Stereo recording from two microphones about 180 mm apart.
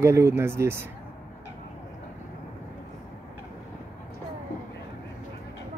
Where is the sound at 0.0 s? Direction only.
15° right (ahead or behind).